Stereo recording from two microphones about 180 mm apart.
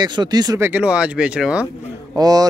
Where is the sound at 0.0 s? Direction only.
25° right (ahead or behind); by 1.7 s 5° right (ahead or behind).